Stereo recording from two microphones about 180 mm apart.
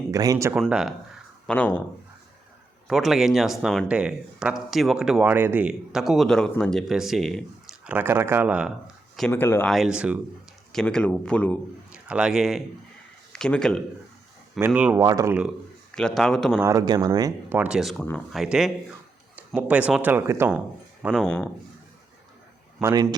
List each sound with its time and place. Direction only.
0.1 s speech: 20° right (ahead or behind)
0.6 s speech: centre (ahead or behind)
1.5 s speech: 10° left (ahead or behind)
2.8 s speech: centre (ahead or behind)
9.1 s speech: 10° left (ahead or behind)
9.7 s speech: 5° right (ahead or behind)
11.9 s a man's voice: 5° right (ahead or behind)
14.6 s speech: 10° right (ahead or behind)
14.9 s speech: 20° right (ahead or behind)
16.0 s speech: 5° left (ahead or behind)
16.6 s speech: 15° right (ahead or behind)
17.6 s speech: 5° right (ahead or behind)
21.2 s speech: 5° left (ahead or behind)
22.8 s speech: 15° right (ahead or behind)